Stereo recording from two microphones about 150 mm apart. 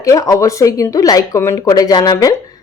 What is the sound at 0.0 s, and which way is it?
Speech, 20° left (ahead or behind).